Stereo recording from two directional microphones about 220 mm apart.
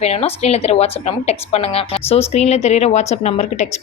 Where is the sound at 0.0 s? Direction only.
30° left (ahead or behind).